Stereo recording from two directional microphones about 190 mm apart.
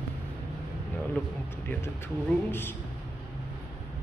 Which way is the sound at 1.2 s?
10° left (ahead or behind).